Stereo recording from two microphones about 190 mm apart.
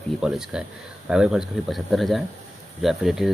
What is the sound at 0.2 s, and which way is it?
Speech, centre (ahead or behind).